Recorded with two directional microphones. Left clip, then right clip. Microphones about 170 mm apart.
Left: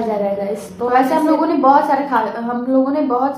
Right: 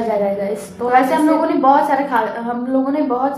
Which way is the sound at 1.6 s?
20° left (ahead or behind).